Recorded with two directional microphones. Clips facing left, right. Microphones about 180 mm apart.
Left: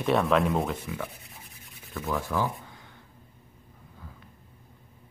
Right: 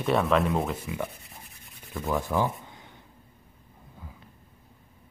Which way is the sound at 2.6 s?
20° right (ahead or behind).